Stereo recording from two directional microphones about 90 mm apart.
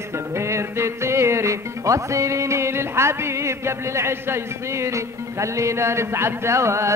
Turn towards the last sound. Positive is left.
turn(degrees=-30)  # may be behind; listen again after turning